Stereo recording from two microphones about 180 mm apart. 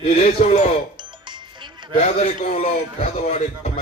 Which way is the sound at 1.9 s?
35° left (ahead or behind).